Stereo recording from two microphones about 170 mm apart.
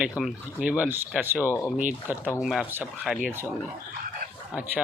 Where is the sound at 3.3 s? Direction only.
15° right (ahead or behind).